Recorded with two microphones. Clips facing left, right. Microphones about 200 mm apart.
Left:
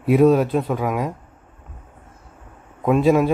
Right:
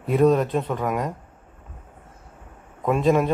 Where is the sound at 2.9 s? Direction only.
5° left (ahead or behind).